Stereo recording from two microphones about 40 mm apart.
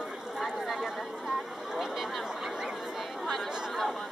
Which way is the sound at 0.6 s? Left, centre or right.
Centre.